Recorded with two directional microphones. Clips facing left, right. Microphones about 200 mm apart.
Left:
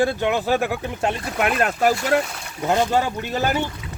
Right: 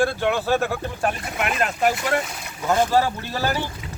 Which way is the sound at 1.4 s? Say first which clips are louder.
Left 3 dB; 40° left (ahead or behind).